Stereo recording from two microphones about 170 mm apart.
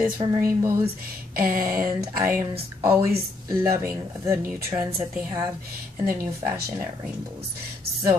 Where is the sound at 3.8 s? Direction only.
15° right (ahead or behind).